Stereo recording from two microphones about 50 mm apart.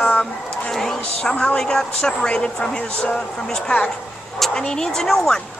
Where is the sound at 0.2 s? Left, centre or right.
Centre.